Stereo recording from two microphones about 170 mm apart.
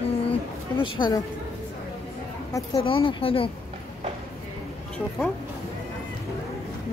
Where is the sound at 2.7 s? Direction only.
30° left (ahead or behind).